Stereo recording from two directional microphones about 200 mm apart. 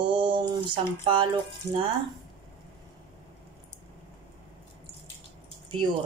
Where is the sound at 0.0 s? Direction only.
25° right (ahead or behind).